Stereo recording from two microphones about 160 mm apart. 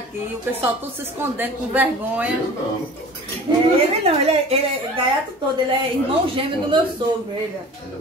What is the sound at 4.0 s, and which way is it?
Speech, 40° right (ahead or behind).